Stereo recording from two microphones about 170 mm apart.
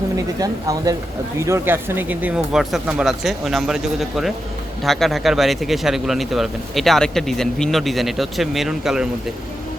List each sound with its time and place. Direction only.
0.3 s speech: 20° right (ahead or behind); by 3.8 s centre (ahead or behind)
4.8 s speech: centre (ahead or behind)